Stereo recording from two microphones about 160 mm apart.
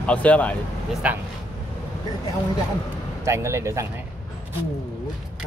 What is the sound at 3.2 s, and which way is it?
Speech, 15° right (ahead or behind).